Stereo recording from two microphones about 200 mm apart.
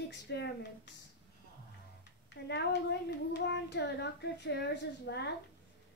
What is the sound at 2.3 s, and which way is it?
Speech, 55° left (ahead or behind).